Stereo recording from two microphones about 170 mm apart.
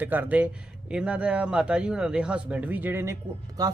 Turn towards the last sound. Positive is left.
turn(degrees=-20)  # may be behind; listen again after turning